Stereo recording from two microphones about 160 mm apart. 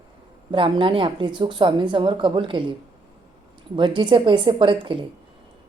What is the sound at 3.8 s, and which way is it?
Speech, 30° right (ahead or behind).